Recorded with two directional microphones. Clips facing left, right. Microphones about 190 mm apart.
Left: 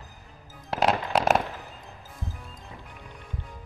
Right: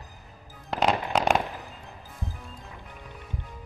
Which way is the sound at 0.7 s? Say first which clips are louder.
Left 1 dB; centre (ahead or behind).